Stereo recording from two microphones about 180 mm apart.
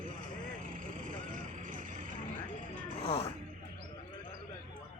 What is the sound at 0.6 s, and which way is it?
Vehicle, 45° right (ahead or behind).